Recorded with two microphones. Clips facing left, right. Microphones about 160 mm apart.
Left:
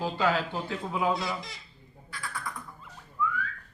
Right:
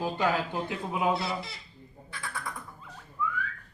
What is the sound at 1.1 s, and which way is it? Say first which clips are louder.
Speech: right 1 dB; 5° right (ahead or behind).